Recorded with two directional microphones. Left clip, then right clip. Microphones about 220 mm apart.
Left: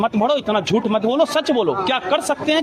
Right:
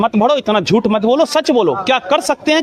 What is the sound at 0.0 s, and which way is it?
Speech, 50° right (ahead or behind).